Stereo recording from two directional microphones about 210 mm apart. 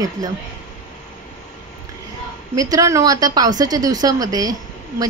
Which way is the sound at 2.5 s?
15° right (ahead or behind).